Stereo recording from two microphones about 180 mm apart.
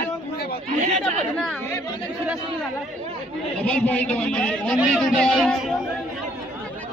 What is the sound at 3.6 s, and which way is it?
A man's voice, 5° left (ahead or behind).